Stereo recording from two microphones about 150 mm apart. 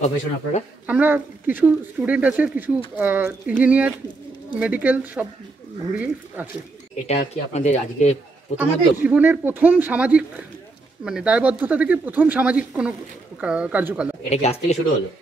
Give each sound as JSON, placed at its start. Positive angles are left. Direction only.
{"t": 0.0, "sound": "speech", "side_deg": 50}
{"t": 0.8, "sound": "speech", "side_deg": -10}
{"t": 7.5, "sound": "speech", "side_deg": 50}
{"t": 8.5, "sound": "speech", "side_deg": -10}
{"t": 14.3, "sound": "speech", "side_deg": 45}